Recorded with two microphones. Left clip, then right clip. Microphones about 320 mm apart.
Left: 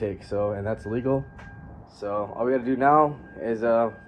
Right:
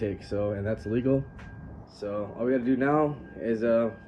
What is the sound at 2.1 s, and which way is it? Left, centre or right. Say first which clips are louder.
Speech: left 4 dB; centre.